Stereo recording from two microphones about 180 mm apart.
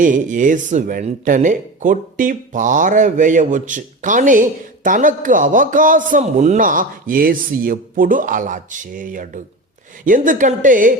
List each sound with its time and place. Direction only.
0.0 s speech: 45° right (ahead or behind)